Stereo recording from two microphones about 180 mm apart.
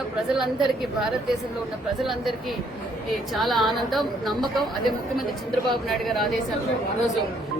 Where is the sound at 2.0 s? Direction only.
Centre (ahead or behind).